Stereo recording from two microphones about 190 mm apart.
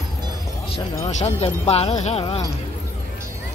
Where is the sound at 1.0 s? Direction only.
35° left (ahead or behind).